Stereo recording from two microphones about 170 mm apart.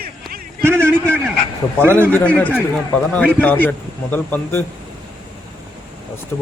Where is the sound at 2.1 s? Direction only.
10° left (ahead or behind).